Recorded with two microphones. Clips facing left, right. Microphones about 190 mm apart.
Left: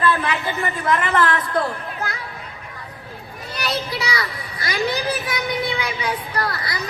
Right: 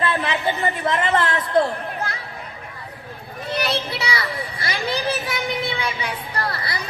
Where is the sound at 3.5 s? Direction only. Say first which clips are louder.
Right 2 dB; 25° right (ahead or behind).